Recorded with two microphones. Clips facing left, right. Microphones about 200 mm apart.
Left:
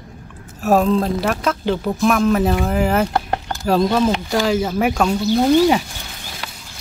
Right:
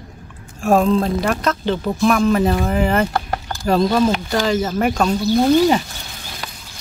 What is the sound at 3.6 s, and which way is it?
Speech, 5° left (ahead or behind).